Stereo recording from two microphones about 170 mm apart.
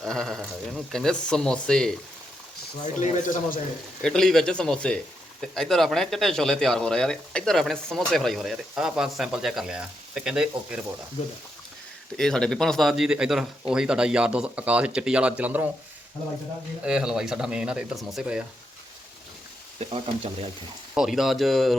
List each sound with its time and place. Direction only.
0.0 s speech: 5° left (ahead or behind)
2.8 s speech: 45° left (ahead or behind)
4.0 s speech: 5° left (ahead or behind)
12.1 s speech: 5° left (ahead or behind)
16.8 s speech: 5° right (ahead or behind)
20.9 s speech: centre (ahead or behind)